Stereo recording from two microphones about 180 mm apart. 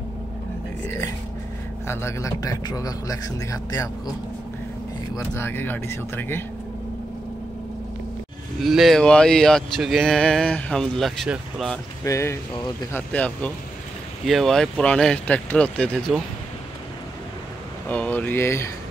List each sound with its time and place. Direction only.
0.8 s a man's voice: 15° left (ahead or behind)
5.1 s a man's voice: 15° left (ahead or behind)
8.6 s speech: centre (ahead or behind)
12.0 s a man's voice: 15° left (ahead or behind)
17.8 s a man's voice: 10° left (ahead or behind)